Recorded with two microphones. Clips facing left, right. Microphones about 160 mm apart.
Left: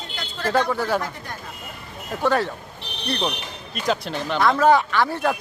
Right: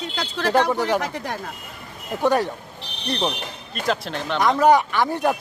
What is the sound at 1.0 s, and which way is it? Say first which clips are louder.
Speech: right 4 dB; 85° right.